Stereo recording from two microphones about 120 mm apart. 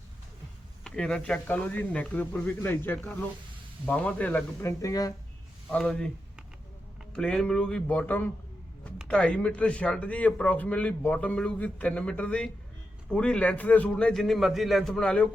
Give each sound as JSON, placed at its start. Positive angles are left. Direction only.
{"t": 0.9, "sound": "a man's voice", "side_deg": 5}
{"t": 4.6, "sound": "speech", "side_deg": 25}
{"t": 5.7, "sound": "a man's voice", "side_deg": 10}
{"t": 7.1, "sound": "a man's voice", "side_deg": 5}